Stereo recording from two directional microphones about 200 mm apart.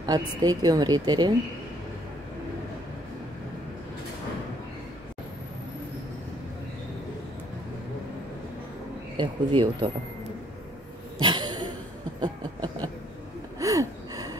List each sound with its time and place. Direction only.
0.0 s a woman's voice: 20° right (ahead or behind)
9.1 s speech: 25° right (ahead or behind)
11.1 s a sound: 20° right (ahead or behind)
13.6 s gasp: 15° right (ahead or behind)